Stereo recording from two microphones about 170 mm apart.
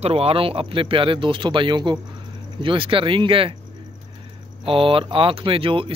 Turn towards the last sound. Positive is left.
turn(degrees=-30)  # may be behind; listen again after turning